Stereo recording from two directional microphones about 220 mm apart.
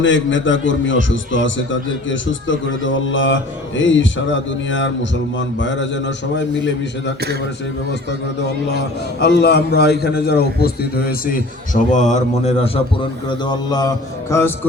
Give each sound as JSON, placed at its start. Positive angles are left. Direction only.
{"t": 0.0, "sound": "a man's voice", "side_deg": 55}
{"t": 9.2, "sound": "a man's voice", "side_deg": 50}